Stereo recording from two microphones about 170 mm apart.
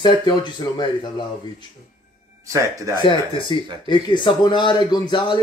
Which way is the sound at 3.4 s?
30° left (ahead or behind).